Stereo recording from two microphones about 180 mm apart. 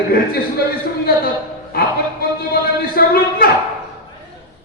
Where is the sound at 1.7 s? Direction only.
55° left (ahead or behind).